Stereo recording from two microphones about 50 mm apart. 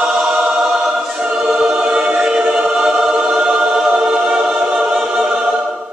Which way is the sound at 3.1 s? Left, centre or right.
Centre.